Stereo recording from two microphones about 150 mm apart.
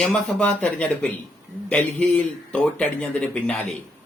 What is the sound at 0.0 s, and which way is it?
Speech, 5° left (ahead or behind).